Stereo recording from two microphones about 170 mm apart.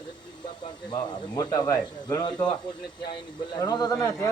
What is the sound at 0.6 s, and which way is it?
Speech, 25° left (ahead or behind).